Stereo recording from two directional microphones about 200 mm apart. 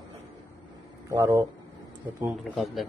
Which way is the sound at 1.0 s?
15° right (ahead or behind).